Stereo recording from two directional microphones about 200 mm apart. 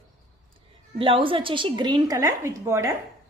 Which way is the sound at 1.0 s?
25° right (ahead or behind).